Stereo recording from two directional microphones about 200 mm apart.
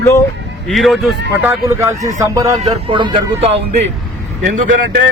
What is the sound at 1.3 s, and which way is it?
A man's voice, 10° right (ahead or behind).